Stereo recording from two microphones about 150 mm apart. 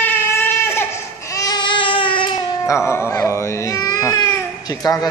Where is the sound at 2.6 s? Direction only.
20° left (ahead or behind).